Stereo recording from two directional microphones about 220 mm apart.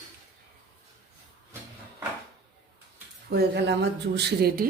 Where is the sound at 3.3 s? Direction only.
50° right (ahead or behind).